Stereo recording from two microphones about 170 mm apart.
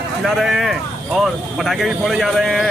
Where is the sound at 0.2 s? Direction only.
Centre (ahead or behind).